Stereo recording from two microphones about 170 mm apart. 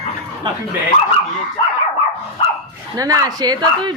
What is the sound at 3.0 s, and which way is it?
Speech, 20° right (ahead or behind).